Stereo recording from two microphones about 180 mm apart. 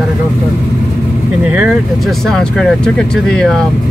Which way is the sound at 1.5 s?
Centre (ahead or behind).